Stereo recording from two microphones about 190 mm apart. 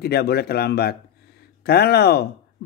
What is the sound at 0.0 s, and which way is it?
Speech, 55° left (ahead or behind).